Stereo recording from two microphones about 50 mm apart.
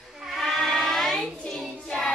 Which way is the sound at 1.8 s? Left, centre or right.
Centre.